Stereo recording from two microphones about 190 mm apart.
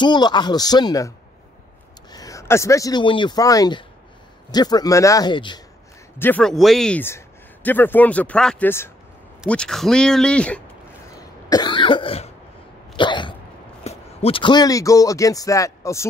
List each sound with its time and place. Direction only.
0.0 s speech: 25° left (ahead or behind)
6.1 s speech: 10° left (ahead or behind)
11.4 s cough: 20° left (ahead or behind)
13.8 s speech: 30° left (ahead or behind)